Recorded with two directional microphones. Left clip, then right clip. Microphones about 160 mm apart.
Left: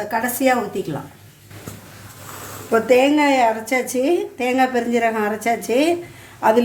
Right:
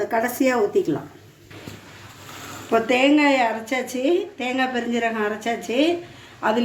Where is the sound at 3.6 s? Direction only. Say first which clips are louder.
Left 3 dB; 45° left (ahead or behind).